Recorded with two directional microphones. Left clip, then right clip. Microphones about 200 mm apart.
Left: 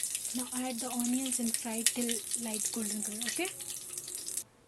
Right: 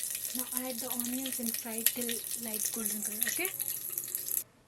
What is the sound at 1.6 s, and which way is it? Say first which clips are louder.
Speech: left 2 dB; 30° left (ahead or behind).